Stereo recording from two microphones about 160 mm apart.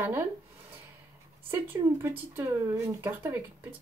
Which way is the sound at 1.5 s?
15° right (ahead or behind).